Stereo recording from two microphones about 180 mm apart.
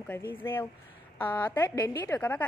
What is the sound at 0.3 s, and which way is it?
A woman's voice, 10° left (ahead or behind).